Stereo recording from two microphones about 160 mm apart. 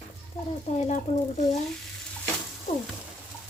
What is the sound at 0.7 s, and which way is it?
Speech, 45° left (ahead or behind).